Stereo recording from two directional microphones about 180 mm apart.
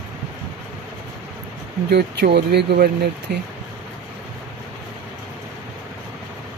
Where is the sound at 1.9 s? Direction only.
65° right (ahead or behind).